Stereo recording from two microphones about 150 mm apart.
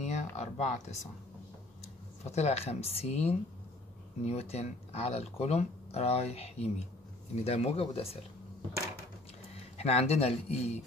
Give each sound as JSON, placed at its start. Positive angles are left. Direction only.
{"t": 0.0, "sound": "speech", "side_deg": 50}
{"t": 2.2, "sound": "speech", "side_deg": 45}
{"t": 9.8, "sound": "speech", "side_deg": 45}